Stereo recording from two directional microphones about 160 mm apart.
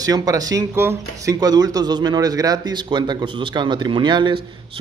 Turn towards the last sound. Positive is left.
turn(degrees=-30)  # may be behind; listen again after turning